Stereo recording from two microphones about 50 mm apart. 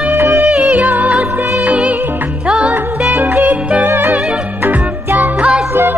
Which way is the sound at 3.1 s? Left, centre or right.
Right.